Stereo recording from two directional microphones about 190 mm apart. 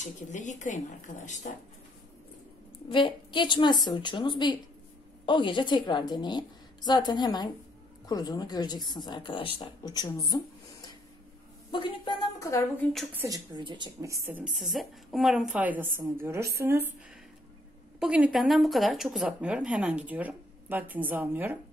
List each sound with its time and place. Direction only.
0.0 s speech: 40° left (ahead or behind)
2.9 s a woman's voice: 25° left (ahead or behind)
10.2 s a sound: 20° left (ahead or behind)
11.7 s a woman's voice: 25° left (ahead or behind)
13.1 s a woman's voice: 10° right (ahead or behind)
13.6 s a woman's voice: 25° right (ahead or behind)
17.9 s speech: 5° right (ahead or behind)